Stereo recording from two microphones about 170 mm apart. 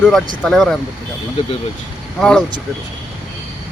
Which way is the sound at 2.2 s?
5° left (ahead or behind).